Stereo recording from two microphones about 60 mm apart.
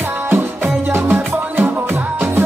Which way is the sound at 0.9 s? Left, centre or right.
Right.